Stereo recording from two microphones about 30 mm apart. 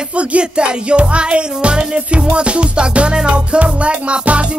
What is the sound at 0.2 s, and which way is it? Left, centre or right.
Music, right.